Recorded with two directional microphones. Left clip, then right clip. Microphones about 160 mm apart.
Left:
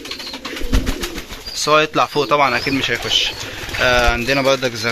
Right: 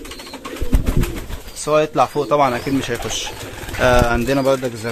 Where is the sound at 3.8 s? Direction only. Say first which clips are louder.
Even; 35° right (ahead or behind).